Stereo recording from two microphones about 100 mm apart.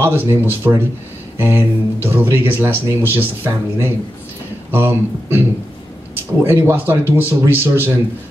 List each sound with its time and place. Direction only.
0.0 s speech: 20° right (ahead or behind)
6.4 s speech: 25° right (ahead or behind)